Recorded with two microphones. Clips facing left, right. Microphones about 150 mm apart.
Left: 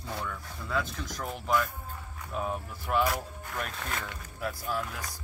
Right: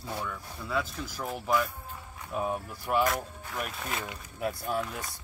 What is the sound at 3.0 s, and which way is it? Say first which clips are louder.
Speech: right 1 dB; centre (ahead or behind).